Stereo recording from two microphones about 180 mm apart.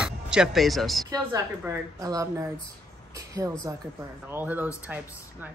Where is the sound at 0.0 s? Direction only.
5° right (ahead or behind).